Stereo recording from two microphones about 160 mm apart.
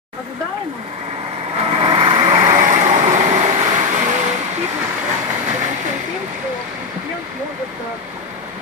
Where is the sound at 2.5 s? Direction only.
50° right (ahead or behind).